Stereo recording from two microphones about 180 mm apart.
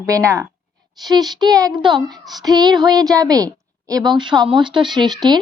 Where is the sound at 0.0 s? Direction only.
20° right (ahead or behind).